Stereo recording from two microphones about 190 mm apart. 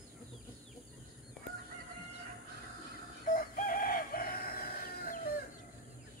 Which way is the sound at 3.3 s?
45° left (ahead or behind).